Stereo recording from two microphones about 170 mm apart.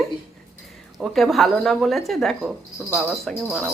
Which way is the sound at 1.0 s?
Centre (ahead or behind).